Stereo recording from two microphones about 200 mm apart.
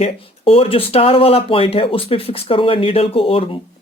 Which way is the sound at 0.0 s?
30° left (ahead or behind).